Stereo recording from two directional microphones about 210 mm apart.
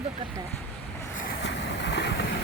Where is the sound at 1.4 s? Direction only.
55° left (ahead or behind).